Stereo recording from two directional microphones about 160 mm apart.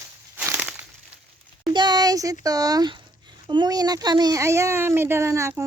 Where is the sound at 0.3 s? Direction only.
10° right (ahead or behind).